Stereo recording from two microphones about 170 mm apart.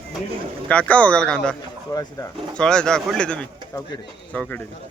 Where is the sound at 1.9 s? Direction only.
20° left (ahead or behind).